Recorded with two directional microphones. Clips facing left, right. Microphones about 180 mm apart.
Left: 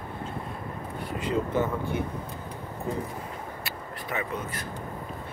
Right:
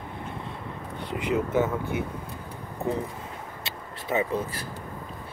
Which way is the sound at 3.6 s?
25° right (ahead or behind).